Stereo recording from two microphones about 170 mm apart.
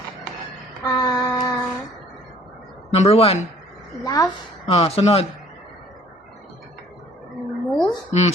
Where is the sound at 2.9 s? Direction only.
35° left (ahead or behind).